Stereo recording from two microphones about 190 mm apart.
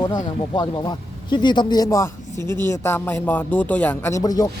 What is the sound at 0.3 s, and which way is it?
Speech, 25° left (ahead or behind).